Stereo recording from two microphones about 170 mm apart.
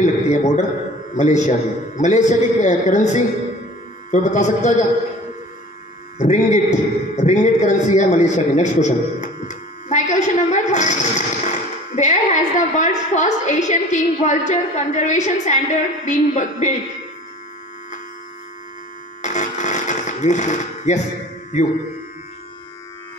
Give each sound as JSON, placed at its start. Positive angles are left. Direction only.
{"t": 0.0, "sound": "a man's voice", "side_deg": 45}
{"t": 6.1, "sound": "a man's voice", "side_deg": 45}
{"t": 19.2, "sound": "a sound", "side_deg": 45}